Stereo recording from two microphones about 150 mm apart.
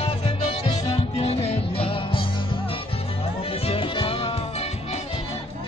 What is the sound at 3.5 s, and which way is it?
Music, 40° left (ahead or behind).